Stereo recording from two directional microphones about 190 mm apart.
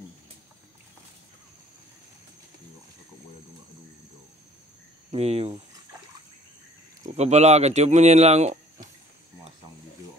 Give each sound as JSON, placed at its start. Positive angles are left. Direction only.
{"t": 5.1, "sound": "speech", "side_deg": -35}
{"t": 7.1, "sound": "speech", "side_deg": -35}